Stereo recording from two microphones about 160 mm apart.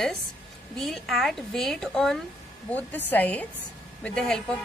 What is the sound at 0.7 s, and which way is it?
A woman's voice, centre (ahead or behind).